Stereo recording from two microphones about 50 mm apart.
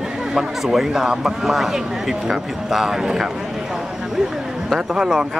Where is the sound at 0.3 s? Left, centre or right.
Centre.